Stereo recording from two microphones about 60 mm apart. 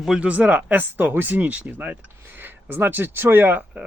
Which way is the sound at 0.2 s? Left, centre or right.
Right.